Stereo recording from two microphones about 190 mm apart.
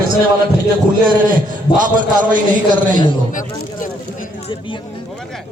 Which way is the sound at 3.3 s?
45° left (ahead or behind).